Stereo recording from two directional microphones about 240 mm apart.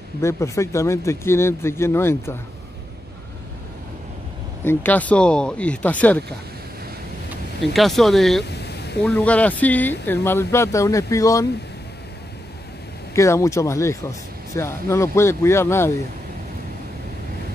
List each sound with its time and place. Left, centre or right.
0.2 s speech: centre
4.6 s speech: centre
7.7 s speech: centre
8.5 s a sound: left
9.0 s speech: centre
13.1 s speech: centre